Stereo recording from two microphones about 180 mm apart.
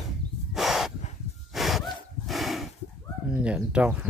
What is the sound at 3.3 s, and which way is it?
Speech, 5° right (ahead or behind).